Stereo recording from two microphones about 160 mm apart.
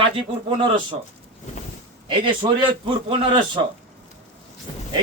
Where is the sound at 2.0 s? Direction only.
30° right (ahead or behind).